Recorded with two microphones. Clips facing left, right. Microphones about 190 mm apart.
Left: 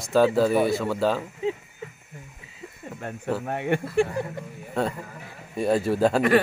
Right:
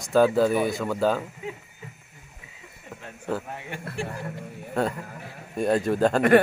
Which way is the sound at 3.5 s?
60° left (ahead or behind).